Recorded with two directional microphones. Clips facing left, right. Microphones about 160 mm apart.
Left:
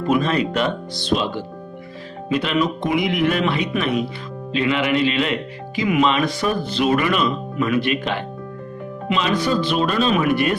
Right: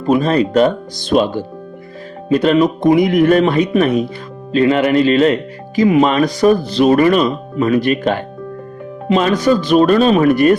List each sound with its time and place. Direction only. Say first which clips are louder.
0.0 s speech: right 5 dB; 35° right (ahead or behind)